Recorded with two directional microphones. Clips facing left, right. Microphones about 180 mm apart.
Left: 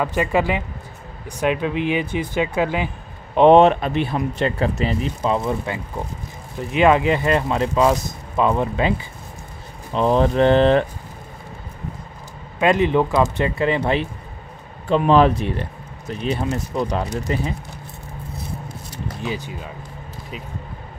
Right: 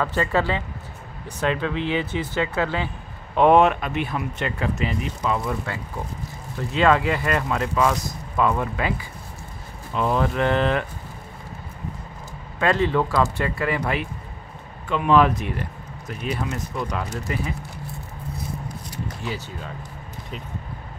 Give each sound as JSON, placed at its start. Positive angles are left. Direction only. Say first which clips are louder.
{"t": 0.0, "sound": "speech", "louder": "left 3 dB", "side_deg": 15}
{"t": 3.3, "sound": "speech", "louder": "left 4 dB", "side_deg": 25}
{"t": 12.5, "sound": "speech", "louder": "left 4 dB", "side_deg": 15}
{"t": 19.2, "sound": "speech", "louder": "left 6 dB", "side_deg": 15}